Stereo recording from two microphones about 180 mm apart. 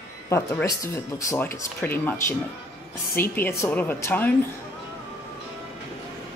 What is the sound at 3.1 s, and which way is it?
Speech, 10° left (ahead or behind).